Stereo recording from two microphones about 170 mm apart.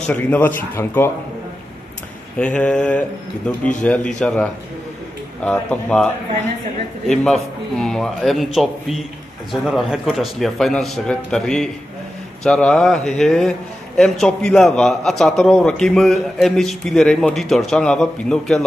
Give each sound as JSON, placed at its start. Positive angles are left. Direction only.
{"t": 0.0, "sound": "speech", "side_deg": 10}
{"t": 2.3, "sound": "a man's voice", "side_deg": 5}